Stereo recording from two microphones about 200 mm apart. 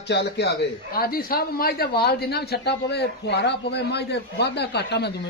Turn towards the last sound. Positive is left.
turn(degrees=55)  # may be behind; listen again after turning